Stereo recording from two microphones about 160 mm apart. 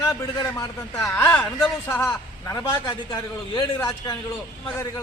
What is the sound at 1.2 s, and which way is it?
A man's voice, 10° left (ahead or behind).